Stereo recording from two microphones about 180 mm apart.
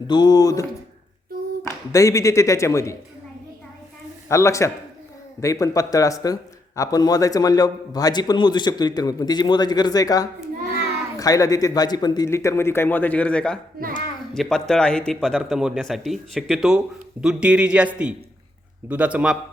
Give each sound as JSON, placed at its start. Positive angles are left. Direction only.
{"t": 0.1, "sound": "speech", "side_deg": 20}
{"t": 1.9, "sound": "a man's voice", "side_deg": 20}
{"t": 4.3, "sound": "a man's voice", "side_deg": 15}
{"t": 13.8, "sound": "a child's voice", "side_deg": -55}
{"t": 14.3, "sound": "a man's voice", "side_deg": 5}